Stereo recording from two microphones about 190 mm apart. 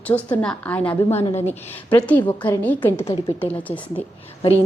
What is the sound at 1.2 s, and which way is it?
Speech, 30° left (ahead or behind).